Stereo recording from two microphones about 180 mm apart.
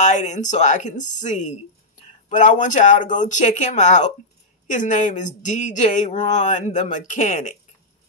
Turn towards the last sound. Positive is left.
turn(degrees=40)  # may be behind; listen again after turning